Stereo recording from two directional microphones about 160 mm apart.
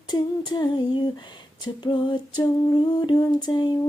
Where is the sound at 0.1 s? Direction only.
30° left (ahead or behind).